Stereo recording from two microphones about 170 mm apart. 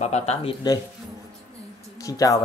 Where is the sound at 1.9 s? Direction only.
20° left (ahead or behind).